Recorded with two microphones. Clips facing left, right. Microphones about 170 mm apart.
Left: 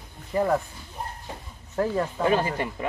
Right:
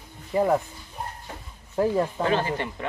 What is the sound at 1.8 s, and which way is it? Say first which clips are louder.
Speech: right 2 dB; 5° right (ahead or behind).